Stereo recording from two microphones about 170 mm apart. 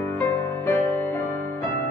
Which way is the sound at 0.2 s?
15° left (ahead or behind).